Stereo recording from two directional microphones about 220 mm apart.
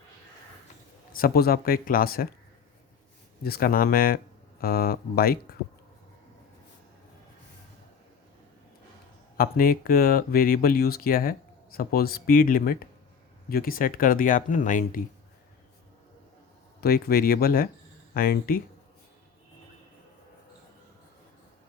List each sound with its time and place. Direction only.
1.1 s speech: 45° left (ahead or behind)
3.4 s speech: 45° left (ahead or behind)
9.4 s speech: 40° left (ahead or behind)
16.8 s speech: 45° left (ahead or behind)